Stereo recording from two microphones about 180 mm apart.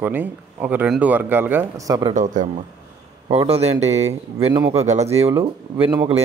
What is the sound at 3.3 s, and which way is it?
A man's voice, 35° right (ahead or behind).